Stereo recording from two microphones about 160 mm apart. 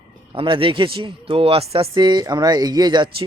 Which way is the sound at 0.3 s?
35° right (ahead or behind).